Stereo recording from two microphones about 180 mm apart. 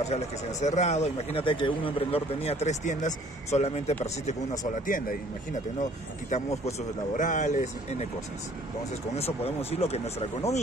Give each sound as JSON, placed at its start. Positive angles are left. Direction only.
{"t": 0.1, "sound": "speech", "side_deg": 40}
{"t": 4.8, "sound": "speech", "side_deg": 50}
{"t": 9.1, "sound": "speech", "side_deg": 35}